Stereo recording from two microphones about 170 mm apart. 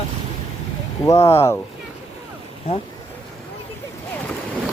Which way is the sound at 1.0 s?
15° left (ahead or behind).